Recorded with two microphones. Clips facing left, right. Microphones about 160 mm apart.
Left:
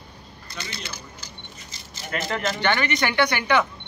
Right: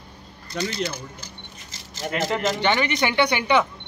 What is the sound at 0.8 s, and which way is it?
Keys jangling, 85° right.